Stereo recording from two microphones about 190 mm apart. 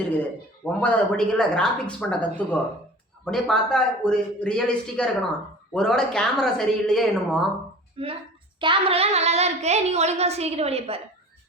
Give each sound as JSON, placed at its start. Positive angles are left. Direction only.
{"t": 0.6, "sound": "a man's voice", "side_deg": 10}
{"t": 8.0, "sound": "a child's voice", "side_deg": -30}